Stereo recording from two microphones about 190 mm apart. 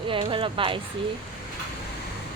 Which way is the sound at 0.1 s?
25° right (ahead or behind).